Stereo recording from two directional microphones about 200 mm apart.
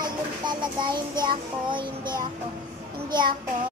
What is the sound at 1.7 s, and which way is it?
Music, 25° right (ahead or behind).